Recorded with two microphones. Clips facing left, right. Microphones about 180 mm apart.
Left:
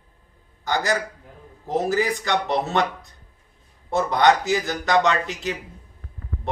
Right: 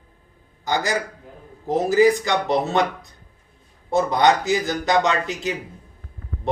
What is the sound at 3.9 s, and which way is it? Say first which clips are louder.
A man's voice: right 1 dB; 15° right (ahead or behind).